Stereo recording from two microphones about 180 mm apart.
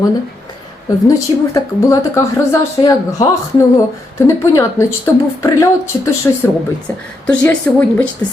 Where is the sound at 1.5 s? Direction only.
15° left (ahead or behind).